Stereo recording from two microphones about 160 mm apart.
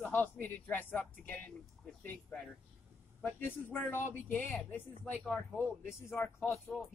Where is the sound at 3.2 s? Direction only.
10° left (ahead or behind).